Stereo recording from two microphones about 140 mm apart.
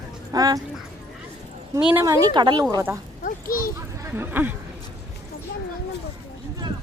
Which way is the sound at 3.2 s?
90° left.